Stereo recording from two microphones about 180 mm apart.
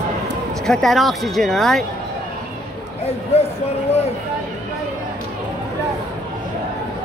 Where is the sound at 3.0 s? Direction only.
35° left (ahead or behind).